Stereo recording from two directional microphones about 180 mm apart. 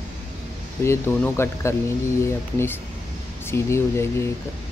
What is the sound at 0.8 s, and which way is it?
Speech, 15° left (ahead or behind).